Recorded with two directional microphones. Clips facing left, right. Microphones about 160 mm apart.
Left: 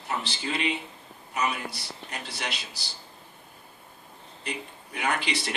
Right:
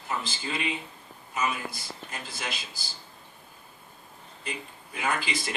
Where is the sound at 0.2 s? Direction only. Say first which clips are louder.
Left 2 dB; 70° left (ahead or behind).